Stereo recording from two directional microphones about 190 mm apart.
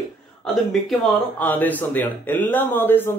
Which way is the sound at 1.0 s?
5° left (ahead or behind).